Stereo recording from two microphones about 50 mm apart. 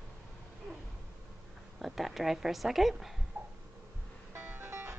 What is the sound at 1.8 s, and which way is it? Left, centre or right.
Speech, centre.